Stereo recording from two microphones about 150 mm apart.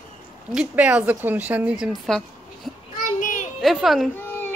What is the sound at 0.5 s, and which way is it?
Speech, 10° right (ahead or behind).